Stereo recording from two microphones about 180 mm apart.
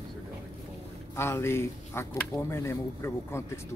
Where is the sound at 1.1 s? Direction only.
15° left (ahead or behind).